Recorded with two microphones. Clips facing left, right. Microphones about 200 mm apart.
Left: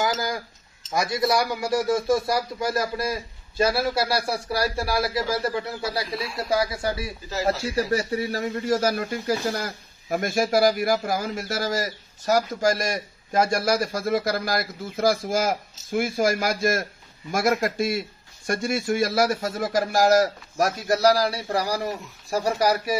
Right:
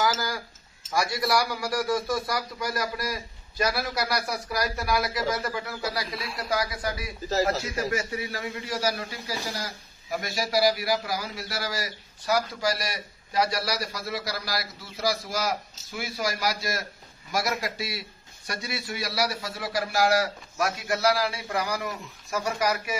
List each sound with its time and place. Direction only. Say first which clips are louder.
0.0 s chink: left 2 dB; 20° left (ahead or behind)
0.8 s a man's voice: left 4 dB; 20° left (ahead or behind)
6.0 s speech: left 5 dB; centre (ahead or behind)
6.5 s a man's voice: left 4 dB; 25° left (ahead or behind)